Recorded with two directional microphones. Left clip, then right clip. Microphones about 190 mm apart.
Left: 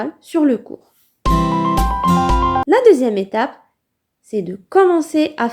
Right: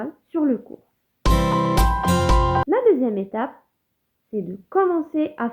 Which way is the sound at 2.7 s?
35° left (ahead or behind).